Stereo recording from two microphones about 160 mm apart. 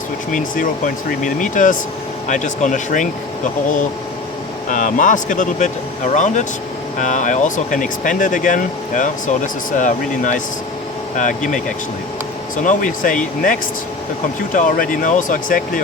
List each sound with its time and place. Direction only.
0.3 s speech: 55° left (ahead or behind)
4.7 s speech: 50° left (ahead or behind)
12.6 s speech: 55° left (ahead or behind)